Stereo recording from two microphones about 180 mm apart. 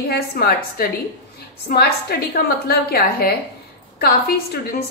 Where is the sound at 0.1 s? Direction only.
60° left (ahead or behind).